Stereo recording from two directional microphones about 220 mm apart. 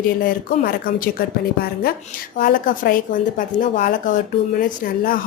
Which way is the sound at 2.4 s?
40° left (ahead or behind).